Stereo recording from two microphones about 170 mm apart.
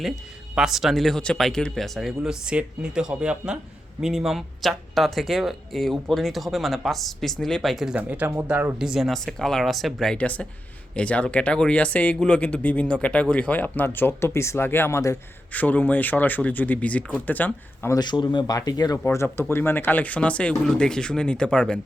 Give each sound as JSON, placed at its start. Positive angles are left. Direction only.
{"t": 0.5, "sound": "speech", "side_deg": -5}
{"t": 17.9, "sound": "speech", "side_deg": 25}